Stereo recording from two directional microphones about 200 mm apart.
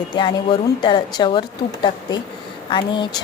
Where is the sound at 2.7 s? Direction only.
25° left (ahead or behind).